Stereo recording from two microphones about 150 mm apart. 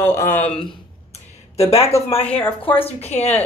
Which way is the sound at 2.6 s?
35° left (ahead or behind).